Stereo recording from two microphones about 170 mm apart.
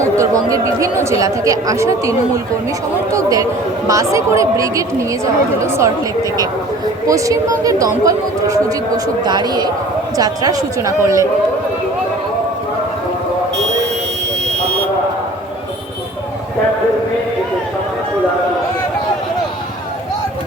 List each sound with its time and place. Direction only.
0.0 s a woman's voice: 20° right (ahead or behind)
7.1 s a woman's voice: 20° right (ahead or behind)
14.4 s buzzer: 75° right (ahead or behind)